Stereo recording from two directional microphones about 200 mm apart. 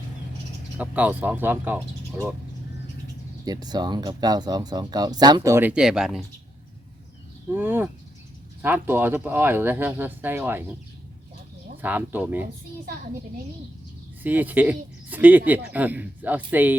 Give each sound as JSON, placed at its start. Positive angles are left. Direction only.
{"t": 0.8, "sound": "speech", "side_deg": -10}
{"t": 3.4, "sound": "speech", "side_deg": -20}
{"t": 7.5, "sound": "speech", "side_deg": -10}
{"t": 11.8, "sound": "speech", "side_deg": -10}
{"t": 14.2, "sound": "speech", "side_deg": -10}